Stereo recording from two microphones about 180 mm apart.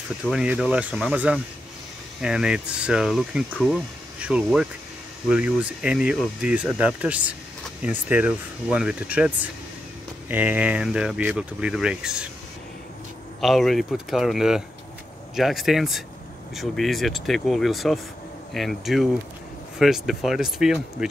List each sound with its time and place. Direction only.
0.2 s speech: 5° right (ahead or behind)
13.4 s speech: centre (ahead or behind)